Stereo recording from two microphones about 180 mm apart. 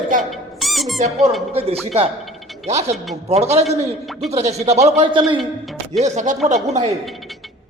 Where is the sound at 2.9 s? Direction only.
Centre (ahead or behind).